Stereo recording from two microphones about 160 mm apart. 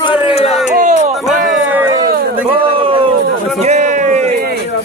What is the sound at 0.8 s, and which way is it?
Speech, 50° right (ahead or behind).